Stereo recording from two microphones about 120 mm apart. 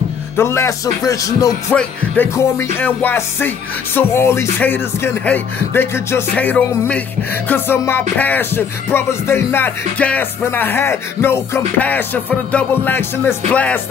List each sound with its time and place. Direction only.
0.4 s speech: 25° left (ahead or behind)
2.3 s music: 20° left (ahead or behind)
7.4 s speech: 15° left (ahead or behind)
8.2 s music: 15° left (ahead or behind)